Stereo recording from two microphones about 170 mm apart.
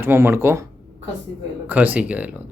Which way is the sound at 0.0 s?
15° right (ahead or behind).